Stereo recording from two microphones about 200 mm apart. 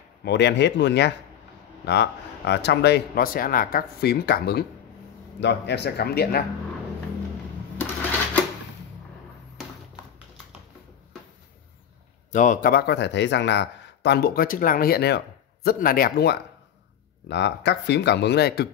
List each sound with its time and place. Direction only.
0.2 s a man's voice: 60° left (ahead or behind)
7.7 s a sound: 10° left (ahead or behind)
12.3 s a man's voice: 40° left (ahead or behind); by 18.7 s 55° left (ahead or behind)